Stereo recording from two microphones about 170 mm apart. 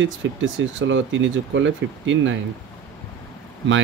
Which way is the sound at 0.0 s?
90° right.